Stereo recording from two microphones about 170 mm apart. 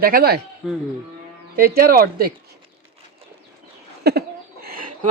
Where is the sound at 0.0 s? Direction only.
60° right (ahead or behind).